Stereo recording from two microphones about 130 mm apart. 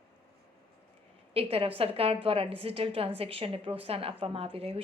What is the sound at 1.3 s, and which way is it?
A woman's voice, 50° right (ahead or behind).